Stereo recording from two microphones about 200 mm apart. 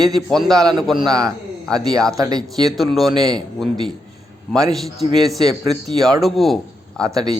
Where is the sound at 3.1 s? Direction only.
20° right (ahead or behind).